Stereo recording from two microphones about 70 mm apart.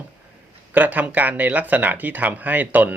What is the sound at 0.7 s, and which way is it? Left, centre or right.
Speech, right.